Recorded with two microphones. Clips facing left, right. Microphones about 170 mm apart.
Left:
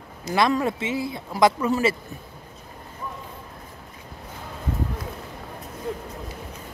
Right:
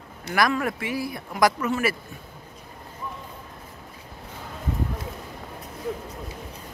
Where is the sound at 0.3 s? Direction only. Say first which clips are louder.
Left 2 dB; 25° left (ahead or behind).